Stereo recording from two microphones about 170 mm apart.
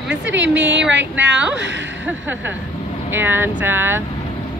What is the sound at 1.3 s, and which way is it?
Speech, 5° right (ahead or behind).